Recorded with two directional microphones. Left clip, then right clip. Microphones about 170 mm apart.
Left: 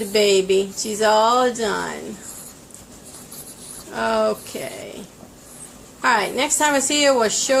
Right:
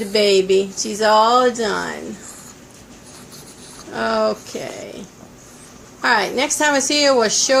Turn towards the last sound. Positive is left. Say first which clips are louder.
# right 2 dB
turn(degrees=-20)  # may be behind; listen again after turning